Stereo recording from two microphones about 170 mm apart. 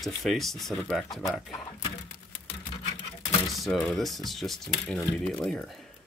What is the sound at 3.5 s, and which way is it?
Speech, centre (ahead or behind).